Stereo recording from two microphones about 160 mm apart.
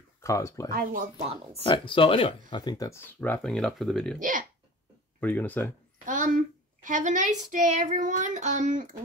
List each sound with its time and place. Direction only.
0.2 s speech: 20° left (ahead or behind)
0.7 s speech: 65° right (ahead or behind)
1.1 s speech: 40° right (ahead or behind)
1.6 s speech: 35° left (ahead or behind); by 4.2 s 5° left (ahead or behind)
4.2 s speech: 55° right (ahead or behind)
5.2 s speech: 10° left (ahead or behind)
6.0 s a woman's voice: 55° right (ahead or behind)